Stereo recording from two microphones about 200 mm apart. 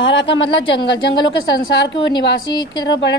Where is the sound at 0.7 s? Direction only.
60° left (ahead or behind).